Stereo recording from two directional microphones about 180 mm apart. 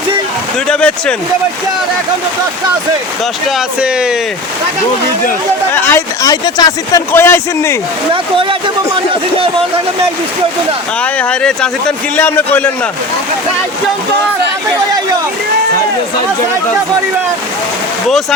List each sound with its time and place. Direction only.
0.7 s speech: 5° left (ahead or behind)
3.8 s speech: 5° right (ahead or behind)
5.7 s speech: 10° left (ahead or behind)
8.1 s speech: 30° right (ahead or behind)
11.0 s speech: 5° left (ahead or behind)